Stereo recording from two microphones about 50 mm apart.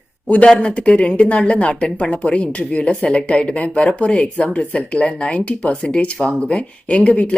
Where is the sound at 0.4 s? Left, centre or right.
Centre.